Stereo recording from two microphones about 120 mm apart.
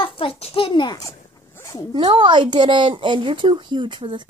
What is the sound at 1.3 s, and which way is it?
Dog, 25° left (ahead or behind).